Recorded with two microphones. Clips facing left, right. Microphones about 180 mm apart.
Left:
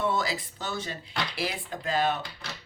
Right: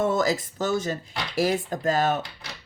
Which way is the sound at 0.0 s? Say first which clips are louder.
Right 6 dB; 45° right (ahead or behind).